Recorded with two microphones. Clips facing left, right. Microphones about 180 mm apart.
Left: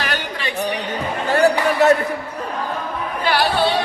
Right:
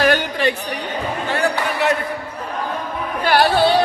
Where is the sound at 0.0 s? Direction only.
50° right (ahead or behind).